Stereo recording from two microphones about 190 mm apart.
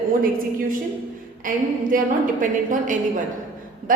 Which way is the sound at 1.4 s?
45° right (ahead or behind).